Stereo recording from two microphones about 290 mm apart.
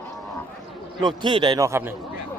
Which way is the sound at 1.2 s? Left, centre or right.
Centre.